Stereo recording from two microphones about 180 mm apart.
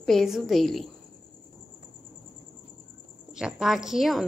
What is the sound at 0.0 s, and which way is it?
Speech, centre (ahead or behind).